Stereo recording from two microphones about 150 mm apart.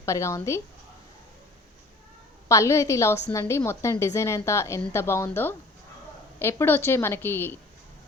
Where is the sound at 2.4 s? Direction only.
20° left (ahead or behind).